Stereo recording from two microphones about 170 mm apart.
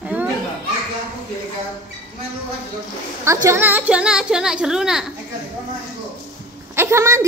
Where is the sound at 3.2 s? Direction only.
15° right (ahead or behind).